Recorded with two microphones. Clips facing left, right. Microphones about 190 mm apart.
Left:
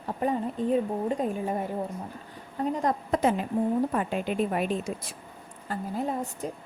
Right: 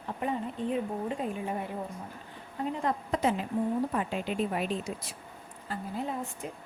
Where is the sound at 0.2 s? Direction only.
40° left (ahead or behind).